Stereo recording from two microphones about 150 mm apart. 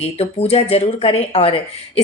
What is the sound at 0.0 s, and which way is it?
Speech, 40° left (ahead or behind).